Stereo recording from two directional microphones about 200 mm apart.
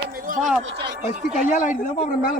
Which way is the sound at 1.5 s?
40° left (ahead or behind).